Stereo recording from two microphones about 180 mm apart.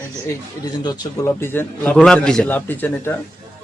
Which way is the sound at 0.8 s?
20° left (ahead or behind).